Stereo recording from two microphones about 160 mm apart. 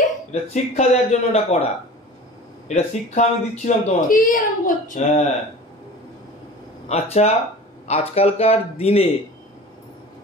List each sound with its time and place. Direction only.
0.3 s speech: 40° left (ahead or behind)
2.7 s speech: 45° left (ahead or behind)
6.9 s speech: 40° left (ahead or behind)